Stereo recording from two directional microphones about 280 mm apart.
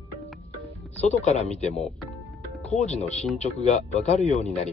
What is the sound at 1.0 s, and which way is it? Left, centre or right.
Speech, left.